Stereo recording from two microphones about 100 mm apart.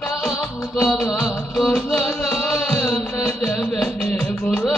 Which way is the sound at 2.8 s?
20° left (ahead or behind).